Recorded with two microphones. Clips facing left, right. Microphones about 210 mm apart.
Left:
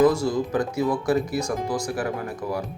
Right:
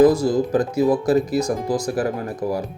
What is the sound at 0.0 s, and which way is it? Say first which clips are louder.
Speech: right 5 dB; 35° right (ahead or behind).